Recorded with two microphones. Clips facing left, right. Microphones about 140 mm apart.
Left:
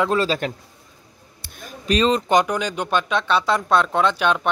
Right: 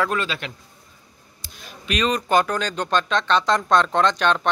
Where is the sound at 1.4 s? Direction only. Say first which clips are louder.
Left 5 dB; 50° left (ahead or behind).